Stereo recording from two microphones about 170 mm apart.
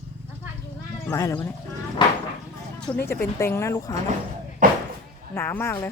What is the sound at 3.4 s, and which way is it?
Speech, 15° left (ahead or behind).